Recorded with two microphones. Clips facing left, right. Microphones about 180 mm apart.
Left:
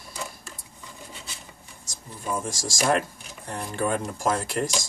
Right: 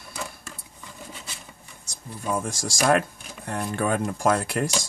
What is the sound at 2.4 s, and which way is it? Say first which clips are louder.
Speech: right 1 dB; 55° right (ahead or behind).